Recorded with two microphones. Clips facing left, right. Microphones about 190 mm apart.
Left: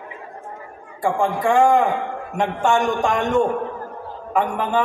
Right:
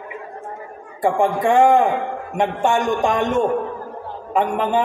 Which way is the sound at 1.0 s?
20° right (ahead or behind).